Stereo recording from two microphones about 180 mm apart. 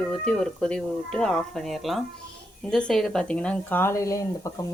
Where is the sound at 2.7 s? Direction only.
5° left (ahead or behind).